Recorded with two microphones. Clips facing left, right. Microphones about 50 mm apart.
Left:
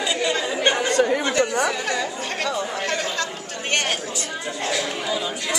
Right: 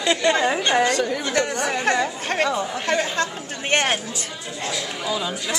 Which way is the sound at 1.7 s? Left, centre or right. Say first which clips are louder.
Right 3 dB; right.